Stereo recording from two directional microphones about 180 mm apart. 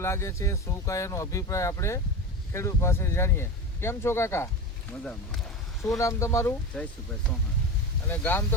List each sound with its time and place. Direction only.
0.0 s speech: 15° left (ahead or behind)
6.0 s speech: 15° left (ahead or behind)
6.7 s speech: 5° left (ahead or behind)
8.1 s speech: 10° left (ahead or behind)